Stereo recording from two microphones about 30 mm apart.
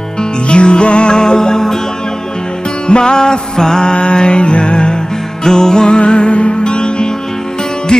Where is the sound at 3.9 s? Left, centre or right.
Left.